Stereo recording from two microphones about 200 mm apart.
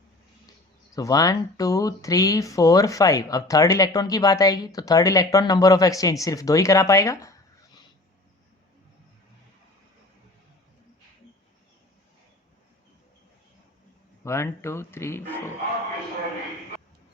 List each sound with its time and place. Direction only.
0.9 s speech: 20° left (ahead or behind)
14.3 s speech: 15° left (ahead or behind)